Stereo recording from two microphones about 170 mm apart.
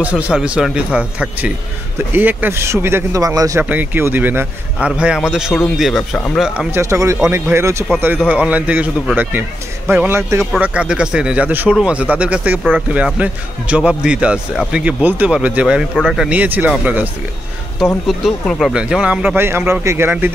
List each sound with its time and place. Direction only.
0.0 s a man's voice: 5° right (ahead or behind)
6.7 s a man's voice: 15° right (ahead or behind)